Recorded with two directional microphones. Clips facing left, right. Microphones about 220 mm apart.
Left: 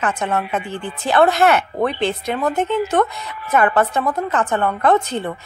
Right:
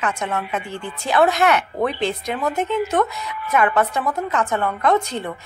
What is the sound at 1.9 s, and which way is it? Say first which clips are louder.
Speech: left 2 dB; centre (ahead or behind).